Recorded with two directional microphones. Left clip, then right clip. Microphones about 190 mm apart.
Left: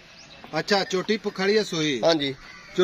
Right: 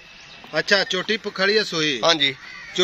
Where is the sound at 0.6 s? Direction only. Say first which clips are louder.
Right 4 dB; 65° left (ahead or behind).